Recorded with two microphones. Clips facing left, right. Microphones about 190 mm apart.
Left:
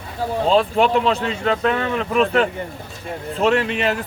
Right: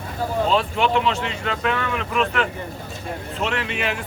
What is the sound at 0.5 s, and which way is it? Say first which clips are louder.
Speech: left 6 dB; 40° left (ahead or behind).